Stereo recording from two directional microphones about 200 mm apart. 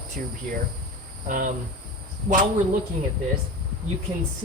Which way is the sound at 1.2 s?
40° right (ahead or behind).